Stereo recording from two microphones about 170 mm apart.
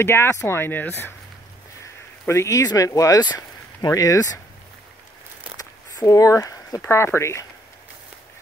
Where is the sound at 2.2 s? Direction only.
15° left (ahead or behind).